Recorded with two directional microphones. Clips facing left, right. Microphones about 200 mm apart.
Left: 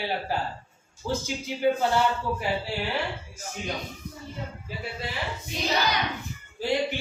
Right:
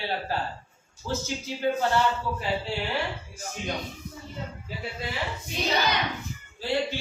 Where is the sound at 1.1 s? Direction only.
15° left (ahead or behind).